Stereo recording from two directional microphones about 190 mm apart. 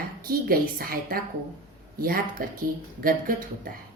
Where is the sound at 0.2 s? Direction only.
50° right (ahead or behind).